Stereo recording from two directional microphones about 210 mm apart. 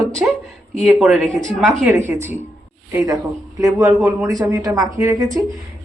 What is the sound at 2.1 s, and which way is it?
Speech, 10° right (ahead or behind).